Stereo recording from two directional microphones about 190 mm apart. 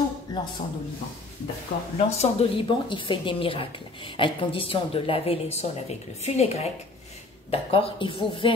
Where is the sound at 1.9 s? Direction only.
35° left (ahead or behind).